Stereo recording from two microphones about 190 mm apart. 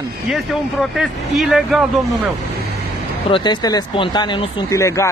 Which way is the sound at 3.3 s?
25° left (ahead or behind).